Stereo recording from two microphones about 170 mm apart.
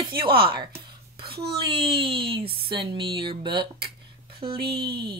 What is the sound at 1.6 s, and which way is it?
Speech, 30° right (ahead or behind).